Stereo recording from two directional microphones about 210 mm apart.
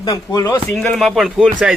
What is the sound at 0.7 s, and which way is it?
Speech, 5° left (ahead or behind).